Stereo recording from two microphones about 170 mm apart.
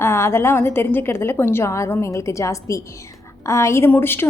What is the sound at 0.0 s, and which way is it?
A woman's voice, 15° left (ahead or behind).